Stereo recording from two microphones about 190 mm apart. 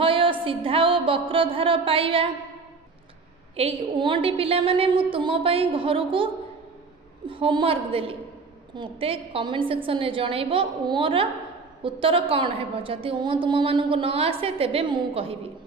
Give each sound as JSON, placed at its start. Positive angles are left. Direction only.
{"t": 0.0, "sound": "a woman's voice", "side_deg": -25}
{"t": 3.5, "sound": "a woman's voice", "side_deg": -30}